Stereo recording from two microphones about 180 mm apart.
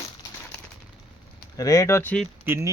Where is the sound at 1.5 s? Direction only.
20° left (ahead or behind).